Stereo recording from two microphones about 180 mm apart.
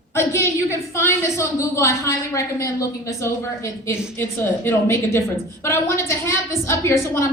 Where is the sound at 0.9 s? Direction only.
15° left (ahead or behind).